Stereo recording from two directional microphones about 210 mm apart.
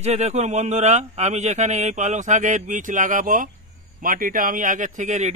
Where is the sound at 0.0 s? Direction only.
30° right (ahead or behind).